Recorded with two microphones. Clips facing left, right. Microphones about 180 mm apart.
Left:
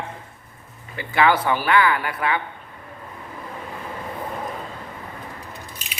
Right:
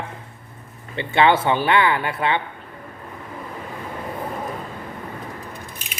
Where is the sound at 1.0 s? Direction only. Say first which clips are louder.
Right 2 dB; 25° right (ahead or behind).